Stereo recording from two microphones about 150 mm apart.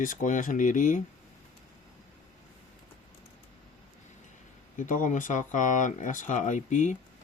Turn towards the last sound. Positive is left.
turn(degrees=55)  # may be behind; listen again after turning